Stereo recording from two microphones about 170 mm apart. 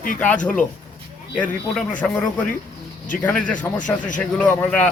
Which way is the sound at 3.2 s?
10° left (ahead or behind).